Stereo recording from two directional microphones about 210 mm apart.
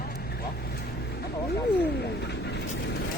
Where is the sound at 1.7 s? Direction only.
50° left (ahead or behind).